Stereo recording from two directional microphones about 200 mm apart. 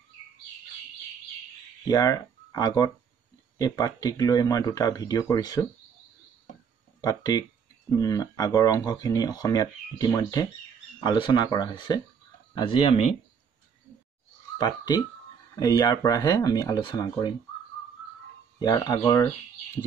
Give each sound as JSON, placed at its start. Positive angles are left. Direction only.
{"t": 1.9, "sound": "speech", "side_deg": 20}
{"t": 7.0, "sound": "speech", "side_deg": 20}
{"t": 15.6, "sound": "speech", "side_deg": 20}
{"t": 18.6, "sound": "speech", "side_deg": 20}